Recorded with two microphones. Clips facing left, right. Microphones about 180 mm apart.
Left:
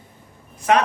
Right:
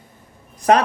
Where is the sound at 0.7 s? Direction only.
40° right (ahead or behind).